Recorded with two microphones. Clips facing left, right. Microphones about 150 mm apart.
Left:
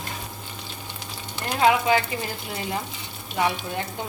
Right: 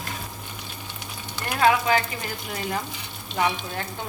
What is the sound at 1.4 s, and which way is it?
Speech, 20° left (ahead or behind).